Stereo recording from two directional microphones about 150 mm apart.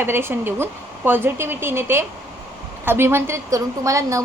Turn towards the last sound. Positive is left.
turn(degrees=-20)  # may be behind; listen again after turning